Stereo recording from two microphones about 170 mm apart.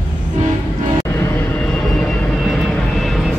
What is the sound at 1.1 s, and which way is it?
Vehicle, 10° left (ahead or behind).